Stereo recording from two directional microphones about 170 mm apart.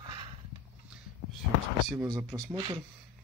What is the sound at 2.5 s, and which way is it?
Speech, 30° right (ahead or behind).